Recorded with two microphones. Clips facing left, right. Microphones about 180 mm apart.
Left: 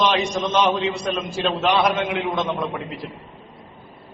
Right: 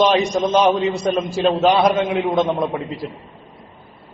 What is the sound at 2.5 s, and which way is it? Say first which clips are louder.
Speech: right 5 dB; 20° right (ahead or behind).